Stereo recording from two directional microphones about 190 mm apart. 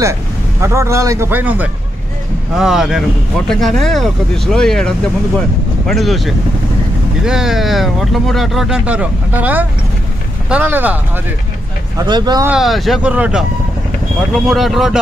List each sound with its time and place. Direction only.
0.0 s speech: 15° right (ahead or behind)
12.0 s speech: 20° right (ahead or behind)
12.4 s speech: centre (ahead or behind)